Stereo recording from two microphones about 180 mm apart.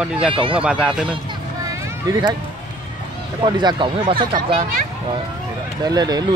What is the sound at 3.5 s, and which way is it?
Speech, 25° right (ahead or behind).